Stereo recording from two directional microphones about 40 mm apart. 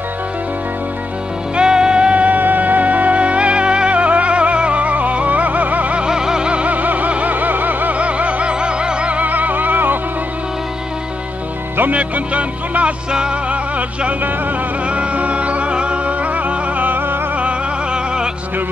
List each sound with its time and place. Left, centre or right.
1.6 s music: centre
2.2 s music: right
6.0 s music: centre
9.1 s music: right
11.9 s music: right
16.1 s music: right
17.4 s music: right